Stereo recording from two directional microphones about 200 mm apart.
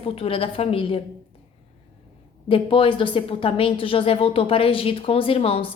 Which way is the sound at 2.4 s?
25° left (ahead or behind).